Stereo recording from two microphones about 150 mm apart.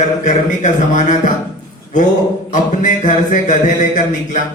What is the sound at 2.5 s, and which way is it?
Speech, 60° left (ahead or behind).